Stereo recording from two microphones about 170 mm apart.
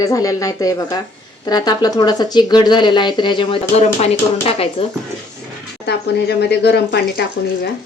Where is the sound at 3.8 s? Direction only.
40° left (ahead or behind).